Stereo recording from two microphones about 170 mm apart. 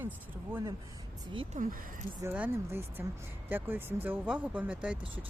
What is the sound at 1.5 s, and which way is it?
Speech, 45° right (ahead or behind).